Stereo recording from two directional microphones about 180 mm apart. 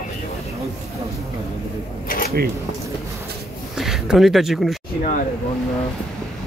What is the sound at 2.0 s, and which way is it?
Cash register, 50° left (ahead or behind).